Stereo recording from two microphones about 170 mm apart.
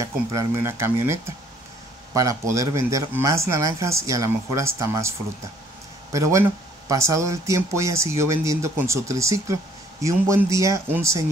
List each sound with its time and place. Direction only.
0.0 s speech: 20° right (ahead or behind)
6.1 s speech: 15° right (ahead or behind)